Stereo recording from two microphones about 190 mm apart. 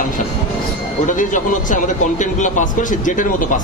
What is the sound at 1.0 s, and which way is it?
Speech, 45° left (ahead or behind).